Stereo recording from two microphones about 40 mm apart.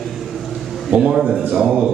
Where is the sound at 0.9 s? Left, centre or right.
Right.